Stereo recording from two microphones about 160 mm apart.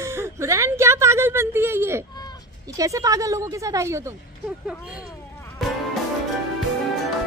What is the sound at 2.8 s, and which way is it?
A woman's voice, 20° right (ahead or behind).